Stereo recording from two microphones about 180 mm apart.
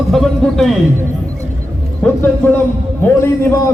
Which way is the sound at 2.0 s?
5° left (ahead or behind).